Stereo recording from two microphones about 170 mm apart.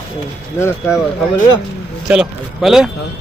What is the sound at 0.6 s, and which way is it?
Speech, 15° left (ahead or behind).